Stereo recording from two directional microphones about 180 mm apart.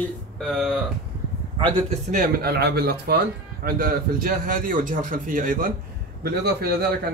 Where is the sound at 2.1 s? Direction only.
55° right (ahead or behind).